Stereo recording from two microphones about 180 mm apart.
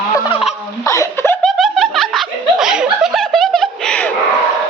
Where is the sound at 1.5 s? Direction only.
Centre (ahead or behind).